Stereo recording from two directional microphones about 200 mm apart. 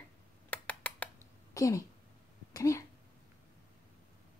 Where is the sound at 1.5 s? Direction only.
15° left (ahead or behind).